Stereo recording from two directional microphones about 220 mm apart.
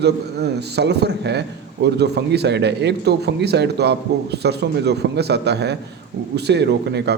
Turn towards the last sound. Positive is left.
turn(degrees=-50)  # may be behind; listen again after turning